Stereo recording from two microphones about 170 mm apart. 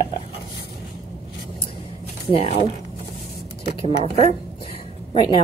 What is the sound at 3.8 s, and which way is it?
Speech, 35° left (ahead or behind).